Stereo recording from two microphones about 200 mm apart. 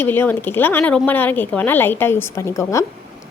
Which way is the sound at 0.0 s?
10° left (ahead or behind).